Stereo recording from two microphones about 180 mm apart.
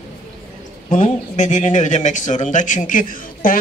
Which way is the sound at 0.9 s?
40° left (ahead or behind).